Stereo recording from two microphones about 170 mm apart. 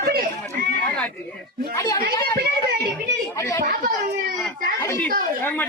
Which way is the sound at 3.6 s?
50° right (ahead or behind).